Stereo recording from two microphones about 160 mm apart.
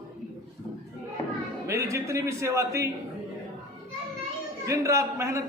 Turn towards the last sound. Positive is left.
turn(degrees=-20)  # may be behind; listen again after turning